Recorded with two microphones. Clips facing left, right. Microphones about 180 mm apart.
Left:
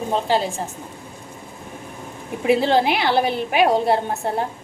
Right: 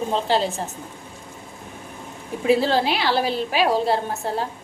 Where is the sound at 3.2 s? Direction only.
55° left (ahead or behind).